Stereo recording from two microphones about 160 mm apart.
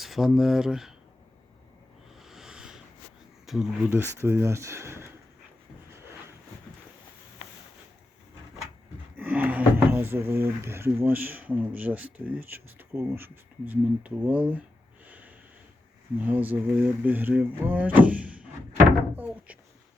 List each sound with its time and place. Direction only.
0.0 s speech: centre (ahead or behind)
2.2 s a sound: 5° right (ahead or behind)
3.8 s speech: 15° right (ahead or behind)
9.1 s speech: 10° right (ahead or behind)
15.0 s snort: 10° right (ahead or behind)
16.1 s speech: 10° right (ahead or behind)
19.1 s door: 10° right (ahead or behind)